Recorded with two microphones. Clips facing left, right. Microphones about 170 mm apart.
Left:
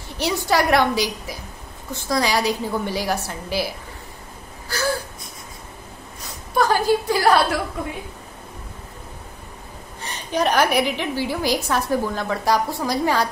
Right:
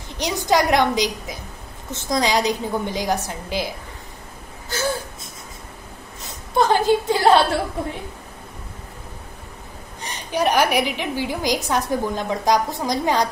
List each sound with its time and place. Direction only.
0.2 s a woman's voice: 15° right (ahead or behind)
4.6 s whimper: 20° right (ahead or behind)
6.5 s a sound: 20° right (ahead or behind)
10.0 s a woman's voice: 15° right (ahead or behind)